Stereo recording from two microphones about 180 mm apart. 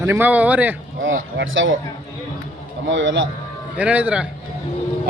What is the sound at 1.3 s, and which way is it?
Speech, 90° right.